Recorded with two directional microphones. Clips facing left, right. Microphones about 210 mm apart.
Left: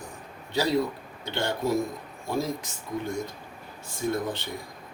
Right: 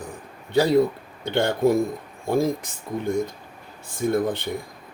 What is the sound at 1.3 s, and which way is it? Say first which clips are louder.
Speech: right 7 dB; 55° right (ahead or behind).